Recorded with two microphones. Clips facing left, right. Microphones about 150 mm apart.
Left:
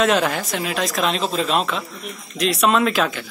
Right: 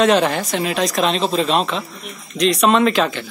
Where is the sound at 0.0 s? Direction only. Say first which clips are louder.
Right 3 dB; centre (ahead or behind).